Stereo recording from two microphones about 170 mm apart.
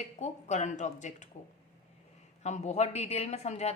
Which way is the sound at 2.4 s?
40° left (ahead or behind).